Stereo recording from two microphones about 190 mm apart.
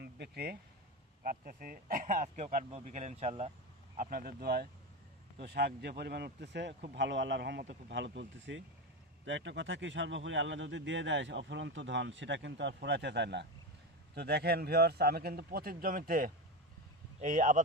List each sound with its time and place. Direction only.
0.0 s a sound: 55° right (ahead or behind)
1.2 s speech: 50° right (ahead or behind)
3.9 s speech: 45° right (ahead or behind)